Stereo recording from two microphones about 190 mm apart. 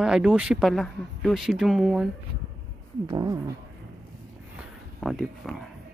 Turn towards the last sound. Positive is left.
turn(degrees=0)  # may be behind; listen again after turning